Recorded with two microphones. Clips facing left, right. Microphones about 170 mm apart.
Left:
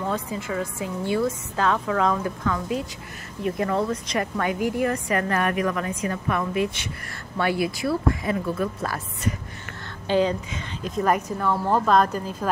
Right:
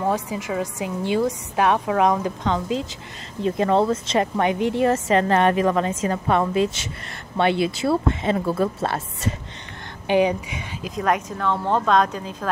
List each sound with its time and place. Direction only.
0.0 s a woman's voice: 15° right (ahead or behind)
10.0 s speech: 15° right (ahead or behind)
10.8 s a woman's voice: centre (ahead or behind)